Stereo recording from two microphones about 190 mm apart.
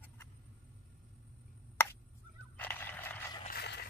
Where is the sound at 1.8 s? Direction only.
10° left (ahead or behind).